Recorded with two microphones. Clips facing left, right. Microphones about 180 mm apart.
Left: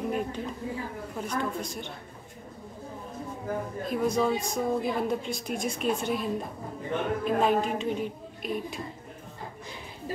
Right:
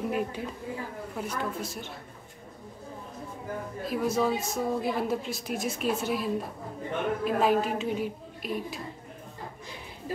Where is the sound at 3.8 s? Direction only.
5° right (ahead or behind).